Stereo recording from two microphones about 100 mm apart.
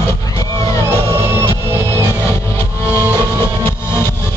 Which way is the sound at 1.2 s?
25° right (ahead or behind).